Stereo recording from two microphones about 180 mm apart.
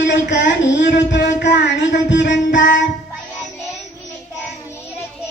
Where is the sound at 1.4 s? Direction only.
75° left (ahead or behind).